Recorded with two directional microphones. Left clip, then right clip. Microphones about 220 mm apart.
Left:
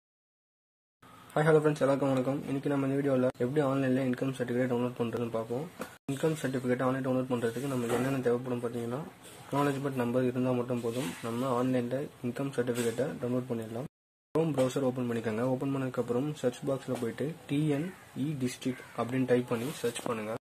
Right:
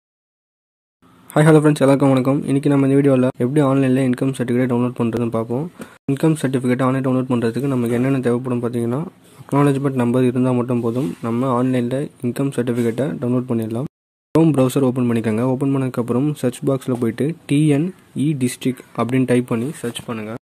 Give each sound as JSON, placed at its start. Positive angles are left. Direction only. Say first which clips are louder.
{"t": 1.3, "sound": "speech", "louder": "right 12 dB", "side_deg": -35}